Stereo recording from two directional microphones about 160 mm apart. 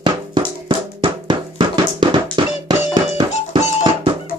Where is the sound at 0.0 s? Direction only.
30° right (ahead or behind).